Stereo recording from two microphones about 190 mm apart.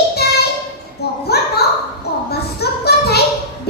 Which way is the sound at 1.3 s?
55° left (ahead or behind).